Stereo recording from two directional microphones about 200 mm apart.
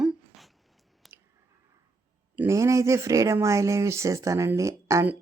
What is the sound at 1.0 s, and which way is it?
Chewing, centre (ahead or behind).